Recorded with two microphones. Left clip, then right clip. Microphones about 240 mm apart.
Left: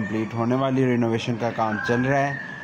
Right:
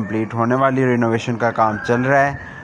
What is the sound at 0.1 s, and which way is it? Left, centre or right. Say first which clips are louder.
A man's voice: right 7 dB; centre.